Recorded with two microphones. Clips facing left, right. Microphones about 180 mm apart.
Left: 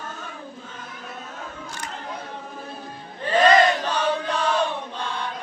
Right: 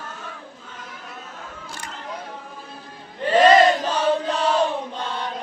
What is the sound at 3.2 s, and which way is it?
Chant, 30° right (ahead or behind).